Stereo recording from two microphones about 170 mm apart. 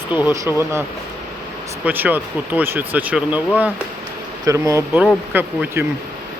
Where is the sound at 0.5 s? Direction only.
10° right (ahead or behind).